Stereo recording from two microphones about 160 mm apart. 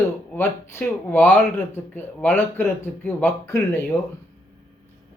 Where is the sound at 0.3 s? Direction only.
15° left (ahead or behind).